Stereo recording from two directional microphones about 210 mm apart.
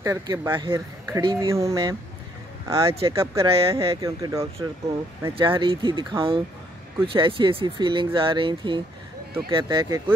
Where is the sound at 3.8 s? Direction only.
15° right (ahead or behind).